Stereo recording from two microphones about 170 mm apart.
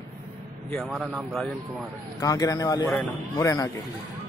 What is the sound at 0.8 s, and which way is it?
Speech, 5° right (ahead or behind).